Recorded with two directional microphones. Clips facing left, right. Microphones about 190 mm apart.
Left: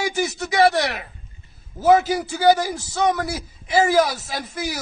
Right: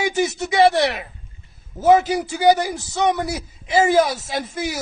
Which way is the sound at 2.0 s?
5° right (ahead or behind).